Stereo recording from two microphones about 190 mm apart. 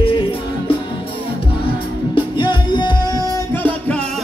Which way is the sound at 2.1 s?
25° left (ahead or behind).